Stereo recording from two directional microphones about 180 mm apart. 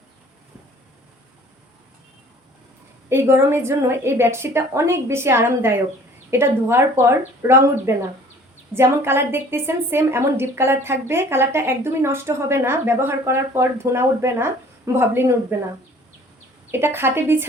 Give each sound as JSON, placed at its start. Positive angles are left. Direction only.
{"t": 3.1, "sound": "a woman's voice", "side_deg": -15}
{"t": 16.7, "sound": "a woman's voice", "side_deg": -15}